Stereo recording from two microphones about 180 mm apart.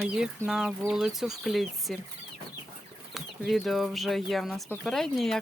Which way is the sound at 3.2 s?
Centre (ahead or behind).